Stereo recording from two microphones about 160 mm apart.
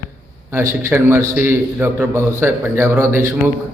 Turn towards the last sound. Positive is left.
turn(degrees=-15)  # may be behind; listen again after turning